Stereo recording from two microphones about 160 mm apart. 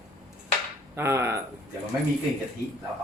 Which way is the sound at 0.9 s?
15° right (ahead or behind).